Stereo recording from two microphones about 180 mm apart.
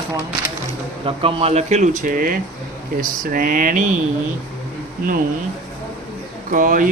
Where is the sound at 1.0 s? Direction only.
30° right (ahead or behind); by 3.9 s 50° right (ahead or behind).